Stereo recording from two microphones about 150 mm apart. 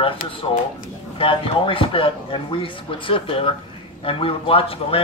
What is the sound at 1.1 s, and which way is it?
Speech, 35° left (ahead or behind).